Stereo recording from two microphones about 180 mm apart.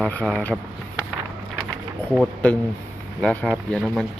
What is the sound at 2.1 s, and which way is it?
Speech, 5° left (ahead or behind).